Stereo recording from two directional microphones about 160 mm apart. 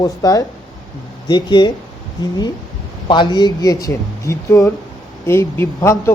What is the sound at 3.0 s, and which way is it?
Speech, 25° left (ahead or behind).